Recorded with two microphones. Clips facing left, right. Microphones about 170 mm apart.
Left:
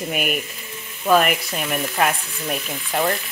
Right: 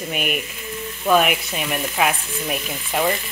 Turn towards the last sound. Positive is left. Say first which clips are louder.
# right 1 dB
turn(degrees=-5)  # may be behind; listen again after turning